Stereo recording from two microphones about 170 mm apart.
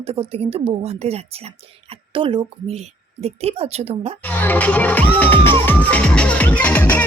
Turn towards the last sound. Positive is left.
turn(degrees=10)  # may be behind; listen again after turning